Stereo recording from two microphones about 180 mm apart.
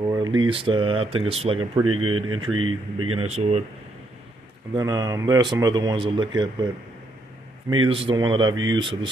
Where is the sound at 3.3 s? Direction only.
35° right (ahead or behind).